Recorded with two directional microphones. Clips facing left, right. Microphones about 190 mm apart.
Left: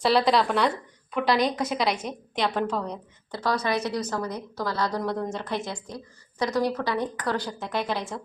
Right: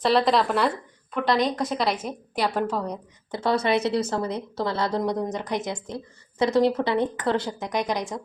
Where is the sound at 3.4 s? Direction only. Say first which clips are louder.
Right 4 dB; 25° right (ahead or behind).